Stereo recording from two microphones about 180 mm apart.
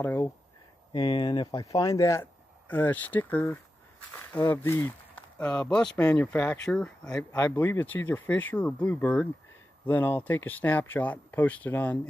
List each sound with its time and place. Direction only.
0.0 s speech: 10° left (ahead or behind)
0.9 s speech: 25° left (ahead or behind)